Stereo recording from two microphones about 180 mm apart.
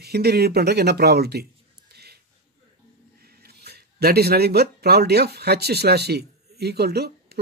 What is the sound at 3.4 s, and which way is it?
Speech, 60° right (ahead or behind).